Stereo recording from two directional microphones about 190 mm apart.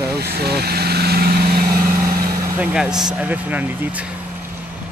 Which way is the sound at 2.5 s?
5° right (ahead or behind).